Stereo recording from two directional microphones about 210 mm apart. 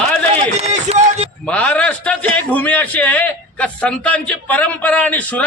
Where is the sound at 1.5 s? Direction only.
5° left (ahead or behind).